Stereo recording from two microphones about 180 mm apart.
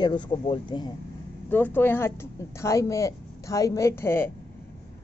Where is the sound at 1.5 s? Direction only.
10° left (ahead or behind).